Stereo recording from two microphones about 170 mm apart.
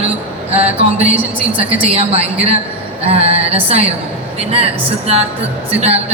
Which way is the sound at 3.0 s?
35° right (ahead or behind).